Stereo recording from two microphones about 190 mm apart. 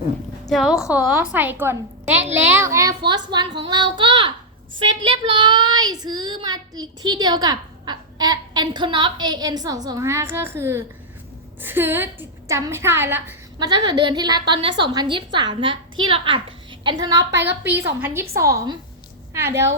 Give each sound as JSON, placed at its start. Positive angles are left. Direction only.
{"t": 0.4, "sound": "a woman's voice", "side_deg": 0}
{"t": 17.3, "sound": "a woman's voice", "side_deg": -65}
{"t": 18.0, "sound": "a woman's voice", "side_deg": -10}